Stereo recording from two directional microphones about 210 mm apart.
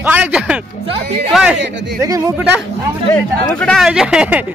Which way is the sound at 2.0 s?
15° right (ahead or behind).